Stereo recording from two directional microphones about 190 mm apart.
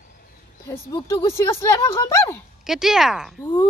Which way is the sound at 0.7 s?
15° left (ahead or behind).